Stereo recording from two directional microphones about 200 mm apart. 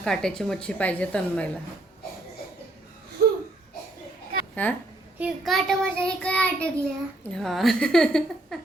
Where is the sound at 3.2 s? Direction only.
45° right (ahead or behind).